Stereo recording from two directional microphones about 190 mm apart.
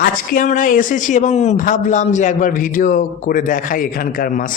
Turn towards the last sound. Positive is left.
turn(degrees=45)  # may be behind; listen again after turning